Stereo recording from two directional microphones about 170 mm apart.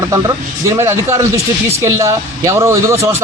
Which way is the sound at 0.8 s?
15° right (ahead or behind).